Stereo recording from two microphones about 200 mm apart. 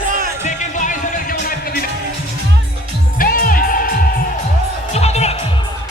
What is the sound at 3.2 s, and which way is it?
Music, 45° left (ahead or behind).